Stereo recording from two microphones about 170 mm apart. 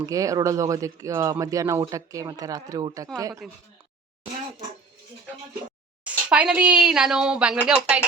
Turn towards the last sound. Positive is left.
turn(degrees=-5)  # may be behind; listen again after turning